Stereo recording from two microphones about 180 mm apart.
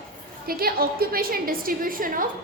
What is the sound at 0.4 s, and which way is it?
A woman's voice, 55° right (ahead or behind).